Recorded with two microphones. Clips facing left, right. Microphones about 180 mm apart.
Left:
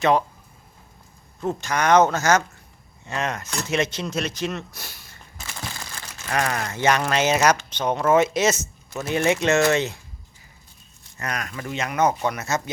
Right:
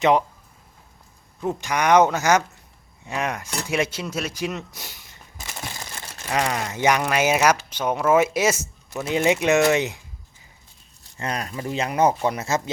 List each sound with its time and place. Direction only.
0.0 s speech: 15° right (ahead or behind)
1.4 s speech: 15° right (ahead or behind)
11.2 s speech: 30° right (ahead or behind)